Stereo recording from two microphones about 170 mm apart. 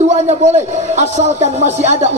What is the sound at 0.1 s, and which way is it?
A man's voice, 40° right (ahead or behind).